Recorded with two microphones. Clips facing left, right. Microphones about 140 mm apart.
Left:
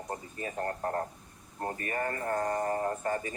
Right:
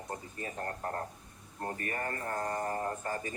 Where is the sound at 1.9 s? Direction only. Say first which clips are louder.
Left 7 dB; 35° left (ahead or behind).